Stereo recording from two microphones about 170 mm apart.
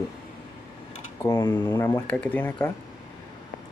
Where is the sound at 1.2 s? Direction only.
20° left (ahead or behind).